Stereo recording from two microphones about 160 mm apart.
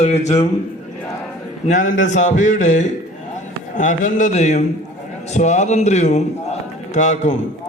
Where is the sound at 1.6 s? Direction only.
50° left (ahead or behind).